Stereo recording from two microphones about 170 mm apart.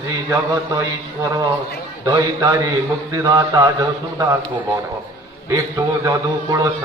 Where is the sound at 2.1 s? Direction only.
20° right (ahead or behind).